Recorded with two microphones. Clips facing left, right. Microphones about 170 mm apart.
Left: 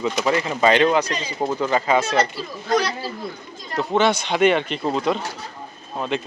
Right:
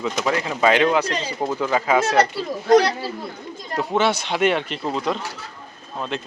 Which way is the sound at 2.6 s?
70° right (ahead or behind).